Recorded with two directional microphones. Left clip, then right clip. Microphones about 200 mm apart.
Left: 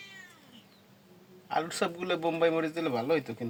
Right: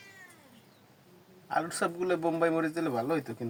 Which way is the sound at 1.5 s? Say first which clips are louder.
Even; 15° left (ahead or behind).